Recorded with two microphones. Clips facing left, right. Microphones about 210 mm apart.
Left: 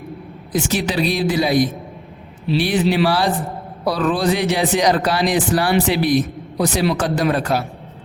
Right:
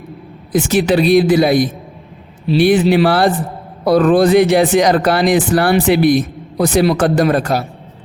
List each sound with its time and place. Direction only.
0.5 s speech: 55° right (ahead or behind)
2.6 s speech: 50° right (ahead or behind)